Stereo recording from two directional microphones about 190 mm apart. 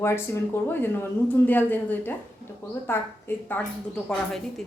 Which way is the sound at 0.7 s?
10° left (ahead or behind).